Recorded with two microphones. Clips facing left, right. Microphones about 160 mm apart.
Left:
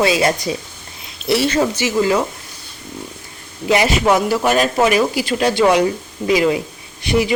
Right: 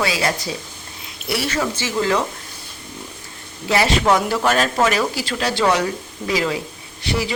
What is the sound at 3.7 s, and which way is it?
Speech, 15° left (ahead or behind).